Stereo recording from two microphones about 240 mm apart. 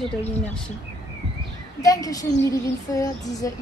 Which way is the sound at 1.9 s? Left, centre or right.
Centre.